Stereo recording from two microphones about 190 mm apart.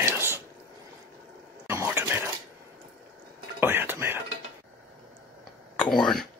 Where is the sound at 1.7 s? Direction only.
15° right (ahead or behind).